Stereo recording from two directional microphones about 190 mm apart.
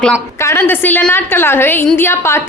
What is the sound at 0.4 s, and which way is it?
Speech, 10° left (ahead or behind).